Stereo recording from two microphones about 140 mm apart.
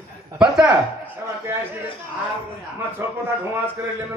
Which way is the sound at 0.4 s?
5° right (ahead or behind).